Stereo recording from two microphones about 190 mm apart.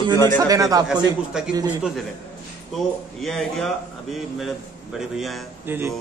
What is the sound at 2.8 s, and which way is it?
Speech, centre (ahead or behind).